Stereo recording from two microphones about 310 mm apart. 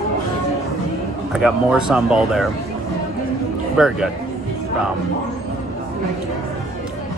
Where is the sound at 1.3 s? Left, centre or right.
Centre.